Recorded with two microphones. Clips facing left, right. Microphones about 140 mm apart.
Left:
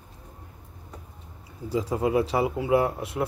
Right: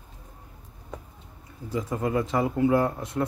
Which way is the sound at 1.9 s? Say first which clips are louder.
Left 2 dB; 15° left (ahead or behind).